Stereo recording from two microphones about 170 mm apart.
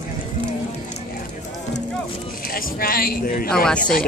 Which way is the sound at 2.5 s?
60° left (ahead or behind).